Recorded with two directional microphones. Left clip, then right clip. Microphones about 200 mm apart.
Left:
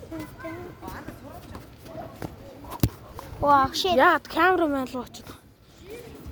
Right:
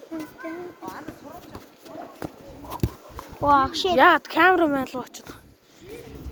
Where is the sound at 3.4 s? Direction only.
60° left (ahead or behind).